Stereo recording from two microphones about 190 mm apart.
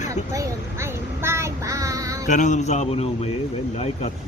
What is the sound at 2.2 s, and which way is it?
Speech, 40° left (ahead or behind).